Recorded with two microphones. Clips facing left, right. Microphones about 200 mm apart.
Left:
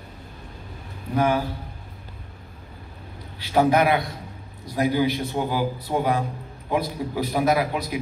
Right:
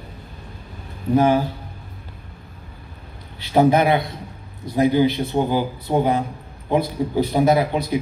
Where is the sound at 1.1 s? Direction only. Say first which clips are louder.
Right 5 dB; 25° right (ahead or behind).